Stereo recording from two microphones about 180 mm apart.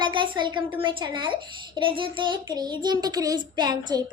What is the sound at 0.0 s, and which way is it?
A child's voice, 25° right (ahead or behind).